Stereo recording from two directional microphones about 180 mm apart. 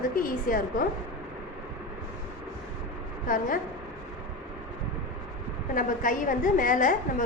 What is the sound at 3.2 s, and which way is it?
Speech, 50° left (ahead or behind).